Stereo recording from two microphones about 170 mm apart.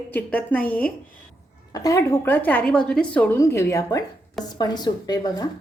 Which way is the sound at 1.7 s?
20° left (ahead or behind).